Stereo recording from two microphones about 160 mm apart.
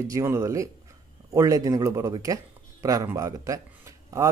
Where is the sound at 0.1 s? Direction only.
20° right (ahead or behind).